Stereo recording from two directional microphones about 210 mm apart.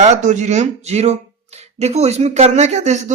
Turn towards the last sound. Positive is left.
turn(degrees=-30)  # may be behind; listen again after turning